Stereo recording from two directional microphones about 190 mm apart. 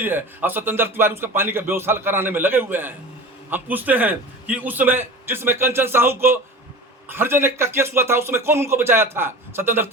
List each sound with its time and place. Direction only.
0.0 s a man's voice: 10° right (ahead or behind)